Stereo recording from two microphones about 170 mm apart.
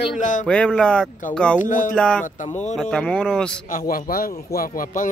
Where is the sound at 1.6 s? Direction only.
50° left (ahead or behind).